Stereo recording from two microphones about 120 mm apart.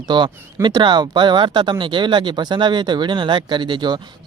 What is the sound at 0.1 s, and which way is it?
Speech, 40° right (ahead or behind).